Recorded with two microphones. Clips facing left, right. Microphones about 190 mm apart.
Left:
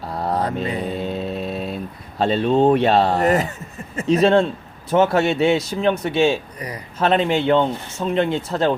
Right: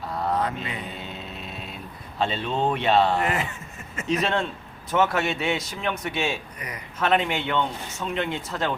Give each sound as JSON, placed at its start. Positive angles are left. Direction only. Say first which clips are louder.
{"t": 0.1, "sound": "mantra", "louder": "left 4 dB", "side_deg": 35}
{"t": 4.9, "sound": "a man's voice", "louder": "left 7 dB", "side_deg": 30}